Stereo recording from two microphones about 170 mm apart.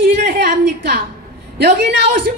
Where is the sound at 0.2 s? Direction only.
70° right (ahead or behind).